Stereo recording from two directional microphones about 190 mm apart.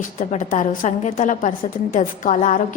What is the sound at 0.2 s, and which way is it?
A woman's voice, 40° left (ahead or behind).